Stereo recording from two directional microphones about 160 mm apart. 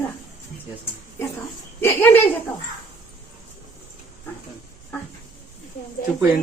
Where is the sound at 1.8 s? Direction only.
15° left (ahead or behind).